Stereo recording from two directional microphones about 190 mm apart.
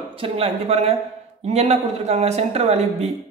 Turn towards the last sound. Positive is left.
turn(degrees=-35)  # may be behind; listen again after turning